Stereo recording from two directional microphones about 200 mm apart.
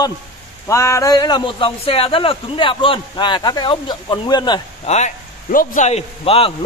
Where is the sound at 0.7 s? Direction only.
15° left (ahead or behind).